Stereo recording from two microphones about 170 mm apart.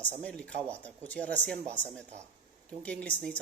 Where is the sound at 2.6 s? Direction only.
5° left (ahead or behind).